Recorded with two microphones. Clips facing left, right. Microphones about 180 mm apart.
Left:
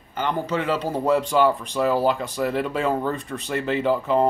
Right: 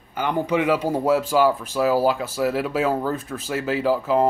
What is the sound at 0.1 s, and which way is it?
Speech, 10° right (ahead or behind).